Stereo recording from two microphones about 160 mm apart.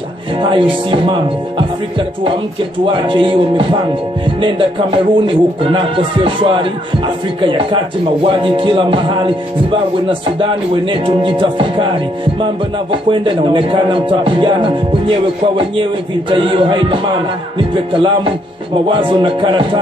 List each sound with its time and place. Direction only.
0.4 s speech: 30° right (ahead or behind)
2.8 s speech: 30° right (ahead or behind)
12.9 s speech: 30° right (ahead or behind)